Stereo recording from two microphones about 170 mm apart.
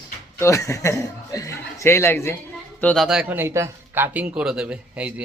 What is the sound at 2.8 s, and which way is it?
Speech, centre (ahead or behind).